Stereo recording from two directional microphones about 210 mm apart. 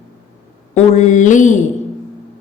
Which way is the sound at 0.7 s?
35° left (ahead or behind).